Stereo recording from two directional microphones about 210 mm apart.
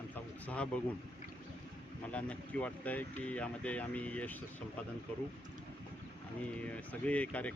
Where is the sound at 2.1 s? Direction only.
5° left (ahead or behind).